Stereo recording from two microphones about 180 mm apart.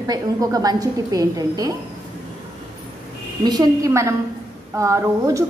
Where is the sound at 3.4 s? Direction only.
25° right (ahead or behind).